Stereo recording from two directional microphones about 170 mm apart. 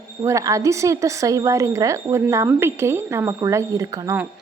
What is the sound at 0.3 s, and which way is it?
A woman's voice, 20° right (ahead or behind).